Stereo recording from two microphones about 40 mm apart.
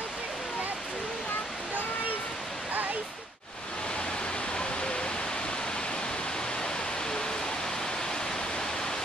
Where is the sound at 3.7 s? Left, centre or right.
Left.